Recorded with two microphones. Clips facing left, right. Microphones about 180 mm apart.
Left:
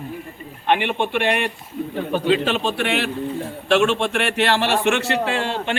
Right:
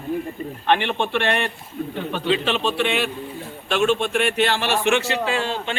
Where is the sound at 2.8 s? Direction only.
60° left (ahead or behind).